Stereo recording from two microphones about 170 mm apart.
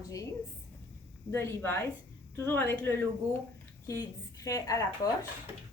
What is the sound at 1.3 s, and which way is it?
A woman's voice, 15° left (ahead or behind).